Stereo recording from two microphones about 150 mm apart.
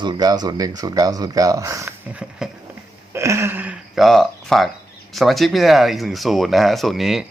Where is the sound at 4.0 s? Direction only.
Centre (ahead or behind).